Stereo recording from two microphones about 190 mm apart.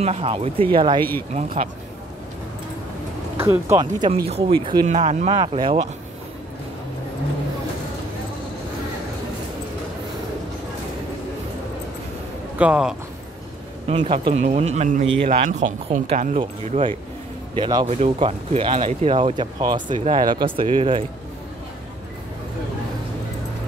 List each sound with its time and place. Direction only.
0.0 s speech: 30° right (ahead or behind)
1.3 s speech: 40° right (ahead or behind)
3.3 s speech: 15° right (ahead or behind)
4.8 s speech: 40° right (ahead or behind)
12.5 s speech: 5° right (ahead or behind)
13.8 s speech: 30° right (ahead or behind)
16.3 s speech: 30° right (ahead or behind)
17.6 s speech: 20° right (ahead or behind)
17.8 s speech: 35° right (ahead or behind)